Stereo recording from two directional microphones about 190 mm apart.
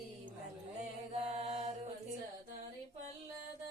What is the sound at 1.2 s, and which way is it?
Mantra, 35° right (ahead or behind).